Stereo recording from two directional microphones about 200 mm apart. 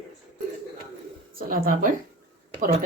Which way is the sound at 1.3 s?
45° right (ahead or behind).